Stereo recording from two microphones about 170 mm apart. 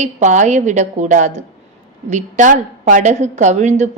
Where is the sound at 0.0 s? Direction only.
45° right (ahead or behind).